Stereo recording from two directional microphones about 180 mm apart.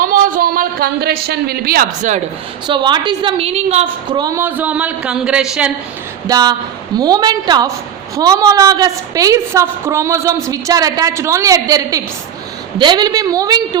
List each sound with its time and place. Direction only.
0.0 s speech: 50° right (ahead or behind)
2.0 s speech: 40° right (ahead or behind)
2.6 s a woman's voice: 25° right (ahead or behind)
4.1 s a woman's voice: 20° right (ahead or behind)
6.2 s a woman's voice: 20° right (ahead or behind)